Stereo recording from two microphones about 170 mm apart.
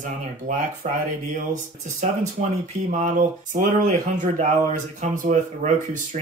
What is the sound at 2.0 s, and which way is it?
Speech, 45° right (ahead or behind).